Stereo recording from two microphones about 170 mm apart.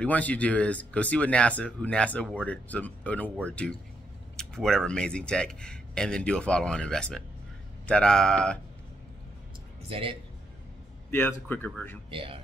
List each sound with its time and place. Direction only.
0.0 s speech: 10° left (ahead or behind)
9.8 s speech: 35° right (ahead or behind)
11.1 s speech: 10° left (ahead or behind)
12.1 s speech: 30° right (ahead or behind)